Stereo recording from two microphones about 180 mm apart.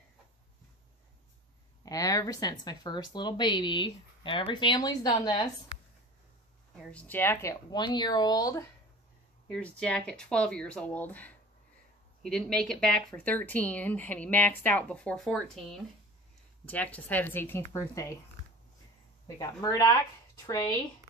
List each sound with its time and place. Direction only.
1.8 s a woman's voice: 20° left (ahead or behind)
6.8 s speech: 5° left (ahead or behind)
7.7 s speech: 25° left (ahead or behind)
9.5 s speech: 5° left (ahead or behind)
19.2 s speech: 20° left (ahead or behind)